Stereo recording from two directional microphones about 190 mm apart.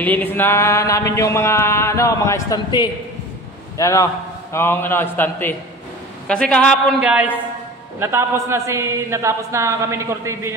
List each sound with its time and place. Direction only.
0.0 s a sound: 10° left (ahead or behind)
6.2 s a man's voice: 5° left (ahead or behind)
7.0 s a man's voice: 5° right (ahead or behind)